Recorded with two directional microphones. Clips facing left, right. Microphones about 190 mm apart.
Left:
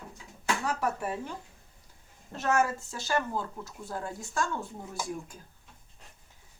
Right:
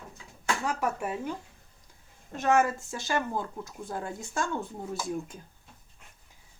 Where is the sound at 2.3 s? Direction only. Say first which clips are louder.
Right 3 dB; 15° right (ahead or behind).